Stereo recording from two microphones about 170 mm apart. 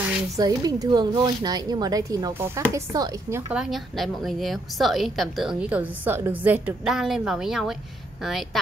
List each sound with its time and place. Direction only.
0.4 s speech: 20° right (ahead or behind)
3.5 s a woman's voice: centre (ahead or behind)